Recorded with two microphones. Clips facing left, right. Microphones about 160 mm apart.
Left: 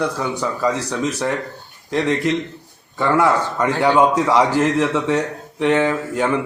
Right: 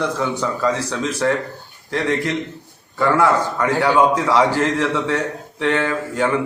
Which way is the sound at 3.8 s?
20° left (ahead or behind).